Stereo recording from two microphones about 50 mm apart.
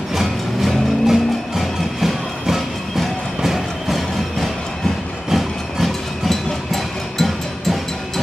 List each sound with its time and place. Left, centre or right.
0.1 s music: centre
5.3 s train: centre